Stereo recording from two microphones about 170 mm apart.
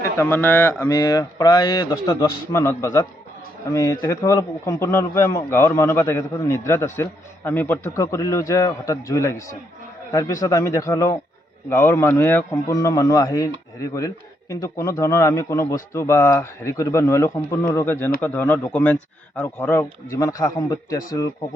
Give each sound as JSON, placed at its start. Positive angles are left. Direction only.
{"t": 0.0, "sound": "speech", "side_deg": 15}
{"t": 14.5, "sound": "speech", "side_deg": 20}